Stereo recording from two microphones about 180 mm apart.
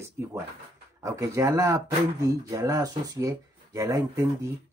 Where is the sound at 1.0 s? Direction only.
15° right (ahead or behind).